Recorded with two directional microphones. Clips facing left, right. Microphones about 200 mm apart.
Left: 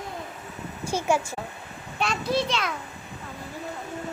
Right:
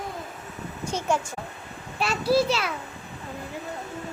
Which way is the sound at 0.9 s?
10° left (ahead or behind).